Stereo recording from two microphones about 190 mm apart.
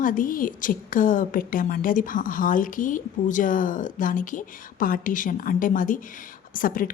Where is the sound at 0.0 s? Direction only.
45° left (ahead or behind).